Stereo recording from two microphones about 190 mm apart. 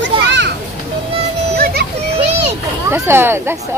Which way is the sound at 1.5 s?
55° right (ahead or behind).